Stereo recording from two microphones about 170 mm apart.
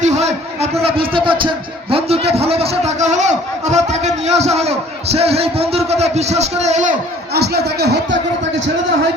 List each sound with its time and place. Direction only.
0.0 s a sound: 40° right (ahead or behind)
0.8 s a man's voice: 35° right (ahead or behind)
7.3 s speech: 70° right (ahead or behind)